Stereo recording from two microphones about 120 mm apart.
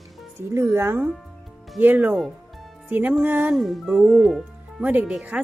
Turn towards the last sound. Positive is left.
turn(degrees=-10)  # may be behind; listen again after turning